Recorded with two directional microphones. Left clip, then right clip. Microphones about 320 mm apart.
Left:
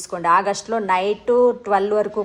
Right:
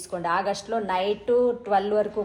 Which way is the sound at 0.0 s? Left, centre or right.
Left.